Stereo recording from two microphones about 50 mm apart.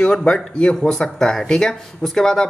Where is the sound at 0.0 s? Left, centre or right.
Centre.